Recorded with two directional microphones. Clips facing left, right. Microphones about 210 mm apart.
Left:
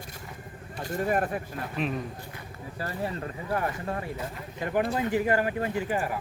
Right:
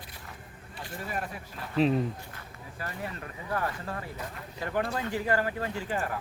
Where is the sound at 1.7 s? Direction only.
30° right (ahead or behind).